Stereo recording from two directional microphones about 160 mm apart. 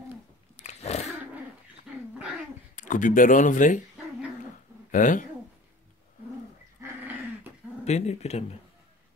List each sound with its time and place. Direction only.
0.7 s dog: 45° left (ahead or behind)
2.7 s speech: 50° left (ahead or behind)
4.9 s speech: 55° left (ahead or behind)
6.8 s a sound: 10° right (ahead or behind)
7.8 s speech: 45° left (ahead or behind)